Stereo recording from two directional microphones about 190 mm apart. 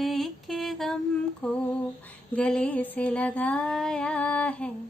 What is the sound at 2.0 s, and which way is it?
Female singing, 5° left (ahead or behind).